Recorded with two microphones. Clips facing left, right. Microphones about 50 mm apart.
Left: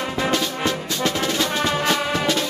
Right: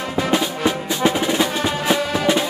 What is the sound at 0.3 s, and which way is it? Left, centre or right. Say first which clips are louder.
Music: right 5 dB; centre.